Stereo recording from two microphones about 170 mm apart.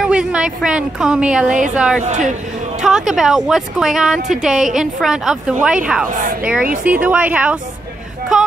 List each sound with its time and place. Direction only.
0.0 s a woman's voice: 5° right (ahead or behind)
2.0 s speech: 50° right (ahead or behind)
2.8 s a woman's voice: centre (ahead or behind)